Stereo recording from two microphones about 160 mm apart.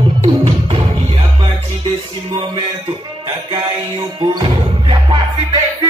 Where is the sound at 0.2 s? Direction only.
35° right (ahead or behind).